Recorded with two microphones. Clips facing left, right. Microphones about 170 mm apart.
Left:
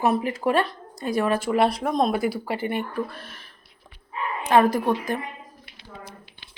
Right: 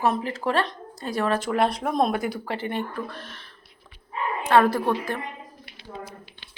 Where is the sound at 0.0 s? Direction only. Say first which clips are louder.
Left 2 dB; 15° left (ahead or behind).